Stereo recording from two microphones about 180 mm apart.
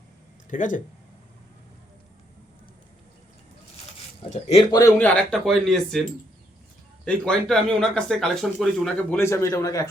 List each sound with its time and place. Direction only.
0.5 s speech: 45° left (ahead or behind)
4.7 s speech: 20° left (ahead or behind)
4.9 s speech: 10° left (ahead or behind)